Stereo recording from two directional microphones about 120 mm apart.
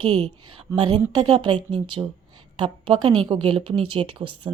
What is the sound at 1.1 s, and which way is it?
A woman's voice, 35° right (ahead or behind).